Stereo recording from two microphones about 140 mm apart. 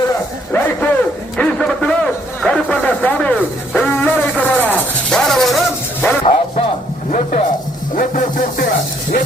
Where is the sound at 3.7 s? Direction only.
10° left (ahead or behind).